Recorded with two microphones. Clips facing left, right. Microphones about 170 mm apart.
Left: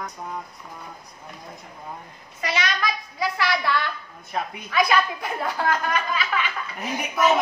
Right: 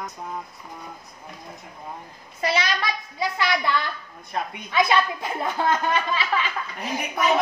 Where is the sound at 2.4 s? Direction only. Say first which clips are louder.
Right 2 dB; 30° right (ahead or behind).